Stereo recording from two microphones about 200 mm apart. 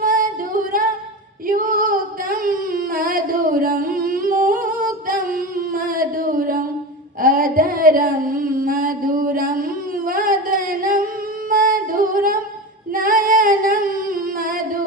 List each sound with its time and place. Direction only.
0.0 s music: 45° right (ahead or behind)
1.5 s female singing: 45° right (ahead or behind)
7.2 s a sound: 45° right (ahead or behind)
12.9 s female singing: 45° right (ahead or behind)